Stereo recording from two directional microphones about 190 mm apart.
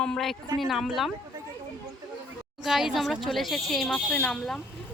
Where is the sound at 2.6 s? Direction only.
Centre (ahead or behind).